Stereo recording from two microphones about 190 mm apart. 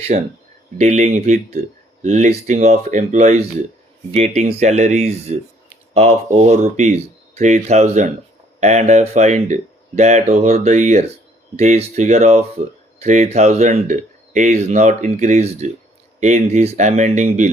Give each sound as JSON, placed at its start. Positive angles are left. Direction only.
{"t": 0.1, "sound": "speech", "side_deg": -40}